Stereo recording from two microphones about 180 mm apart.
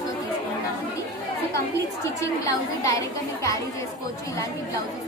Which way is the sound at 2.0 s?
15° left (ahead or behind).